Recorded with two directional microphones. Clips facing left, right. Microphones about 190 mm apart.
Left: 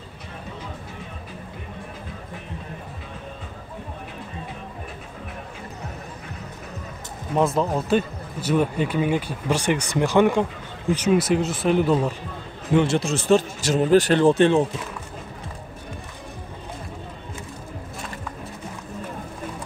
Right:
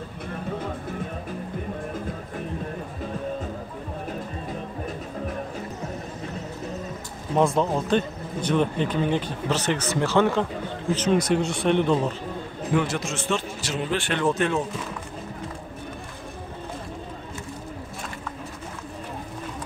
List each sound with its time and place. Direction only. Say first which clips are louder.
7.3 s speech: even; centre (ahead or behind)
12.7 s a man's voice: left 5 dB; 30° left (ahead or behind)